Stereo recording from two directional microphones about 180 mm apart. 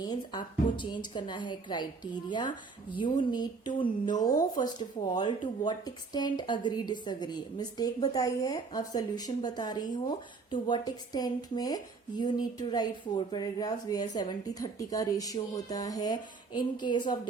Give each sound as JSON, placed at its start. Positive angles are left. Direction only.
{"t": 0.0, "sound": "a woman's voice", "side_deg": 25}
{"t": 3.0, "sound": "a woman's voice", "side_deg": 25}